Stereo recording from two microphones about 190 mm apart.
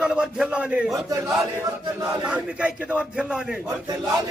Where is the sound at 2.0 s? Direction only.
5° right (ahead or behind).